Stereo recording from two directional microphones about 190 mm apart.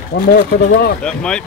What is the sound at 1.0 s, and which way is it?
Speech, 5° left (ahead or behind).